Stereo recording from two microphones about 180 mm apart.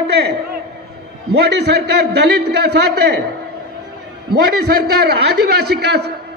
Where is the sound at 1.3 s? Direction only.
70° right (ahead or behind).